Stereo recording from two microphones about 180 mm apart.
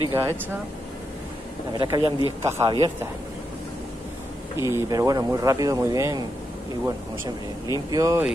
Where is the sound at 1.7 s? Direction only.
25° right (ahead or behind).